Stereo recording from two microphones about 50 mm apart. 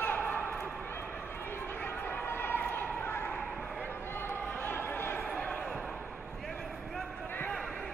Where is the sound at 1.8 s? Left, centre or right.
Left.